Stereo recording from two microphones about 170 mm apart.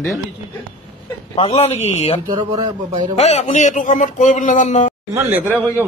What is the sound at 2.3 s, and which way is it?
Speech, 25° right (ahead or behind).